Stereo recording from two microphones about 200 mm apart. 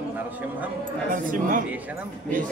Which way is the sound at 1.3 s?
40° right (ahead or behind).